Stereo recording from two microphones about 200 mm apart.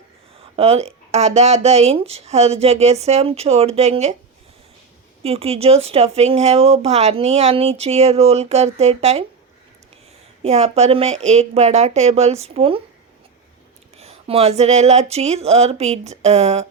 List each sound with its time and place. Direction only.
0.5 s speech: 30° right (ahead or behind)
5.2 s speech: 30° right (ahead or behind)
10.4 s speech: 35° right (ahead or behind)
13.9 s speech: 30° right (ahead or behind)